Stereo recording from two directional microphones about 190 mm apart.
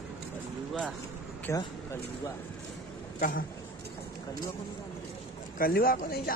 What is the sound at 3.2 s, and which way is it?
Speech, 50° left (ahead or behind).